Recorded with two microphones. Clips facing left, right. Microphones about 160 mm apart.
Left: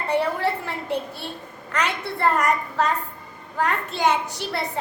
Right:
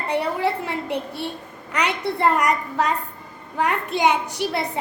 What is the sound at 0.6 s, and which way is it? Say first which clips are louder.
A child's voice: right 1 dB; 15° right (ahead or behind).